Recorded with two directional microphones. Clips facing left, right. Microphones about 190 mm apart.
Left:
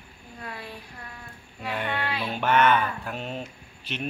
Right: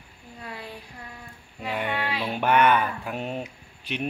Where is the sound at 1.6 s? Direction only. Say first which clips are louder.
Right 1 dB; 15° right (ahead or behind).